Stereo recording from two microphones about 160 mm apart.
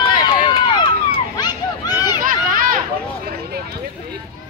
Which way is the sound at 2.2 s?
60° right (ahead or behind).